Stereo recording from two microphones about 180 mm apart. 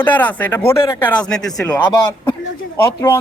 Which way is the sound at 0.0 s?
10° left (ahead or behind).